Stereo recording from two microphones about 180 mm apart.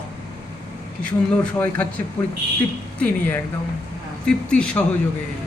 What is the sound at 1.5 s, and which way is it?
Speech, 10° left (ahead or behind).